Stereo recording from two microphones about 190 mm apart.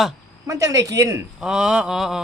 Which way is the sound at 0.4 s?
15° right (ahead or behind).